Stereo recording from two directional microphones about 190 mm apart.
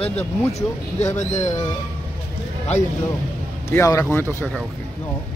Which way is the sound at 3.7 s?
15° left (ahead or behind).